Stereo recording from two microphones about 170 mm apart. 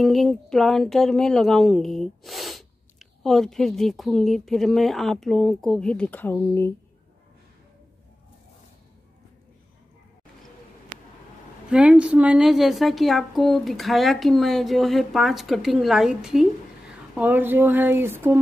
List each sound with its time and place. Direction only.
0.0 s speech: centre (ahead or behind)
11.7 s speech: 5° right (ahead or behind)